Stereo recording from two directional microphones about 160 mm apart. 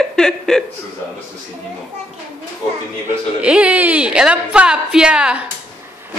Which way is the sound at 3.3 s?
5° right (ahead or behind).